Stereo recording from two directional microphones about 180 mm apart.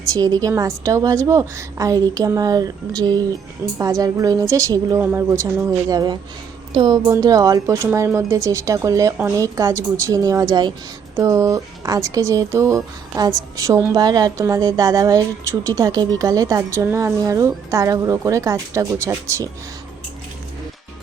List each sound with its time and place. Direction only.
0.0 s a woman's voice: 20° right (ahead or behind)